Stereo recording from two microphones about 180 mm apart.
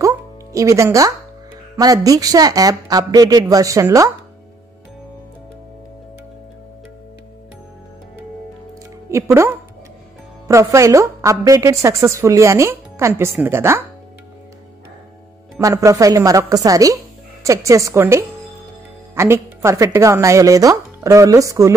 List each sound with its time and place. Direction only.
0.0 s music: 15° right (ahead or behind)
1.8 s a woman's voice: 20° right (ahead or behind)
9.1 s a woman's voice: 15° right (ahead or behind)
15.5 s a woman's voice: 15° right (ahead or behind)